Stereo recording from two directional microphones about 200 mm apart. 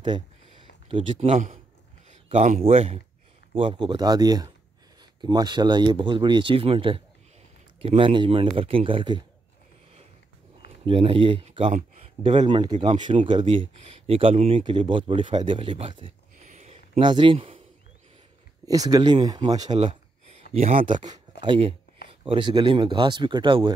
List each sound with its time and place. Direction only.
0.0 s a sound: 25° right (ahead or behind)
2.0 s speech: 35° right (ahead or behind)
10.9 s speech: 25° right (ahead or behind)
16.4 s a sound: 35° right (ahead or behind)
18.7 s speech: 20° right (ahead or behind)
20.5 s speech: 35° right (ahead or behind)
21.1 s speech: 25° right (ahead or behind)